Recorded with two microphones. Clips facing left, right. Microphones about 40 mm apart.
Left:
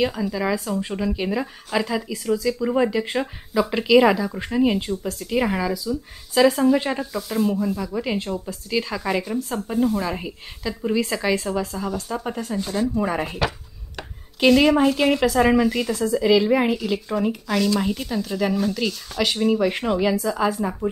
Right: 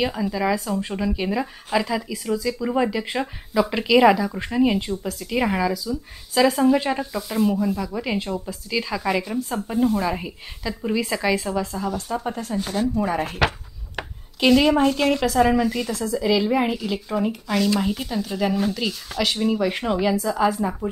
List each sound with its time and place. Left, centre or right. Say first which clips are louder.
0.0 s speech: even; centre
8.2 s speech: even; centre
8.6 s speech: even; centre
14.4 s speech: left 1 dB; centre